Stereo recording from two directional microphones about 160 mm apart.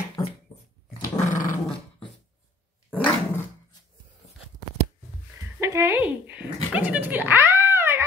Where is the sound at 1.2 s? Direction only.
55° left (ahead or behind).